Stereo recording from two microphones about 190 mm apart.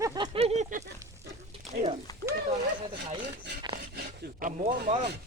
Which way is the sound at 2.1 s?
20° left (ahead or behind).